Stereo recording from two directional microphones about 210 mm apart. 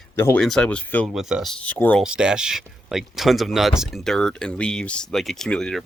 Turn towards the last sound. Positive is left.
turn(degrees=5)  # may be behind; listen again after turning